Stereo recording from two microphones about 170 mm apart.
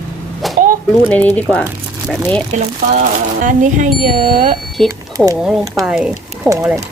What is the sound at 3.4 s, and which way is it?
Speech, 50° right (ahead or behind).